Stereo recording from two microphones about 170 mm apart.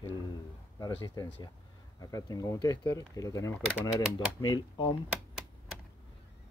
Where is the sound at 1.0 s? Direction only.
20° left (ahead or behind).